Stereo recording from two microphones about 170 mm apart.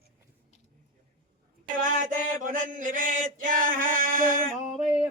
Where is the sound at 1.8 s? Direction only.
50° right (ahead or behind).